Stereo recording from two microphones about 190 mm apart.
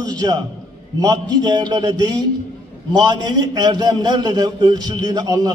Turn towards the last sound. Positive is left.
turn(degrees=-20)  # may be behind; listen again after turning